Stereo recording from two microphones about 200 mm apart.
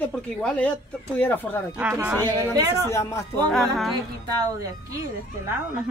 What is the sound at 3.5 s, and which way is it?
Speech, centre (ahead or behind).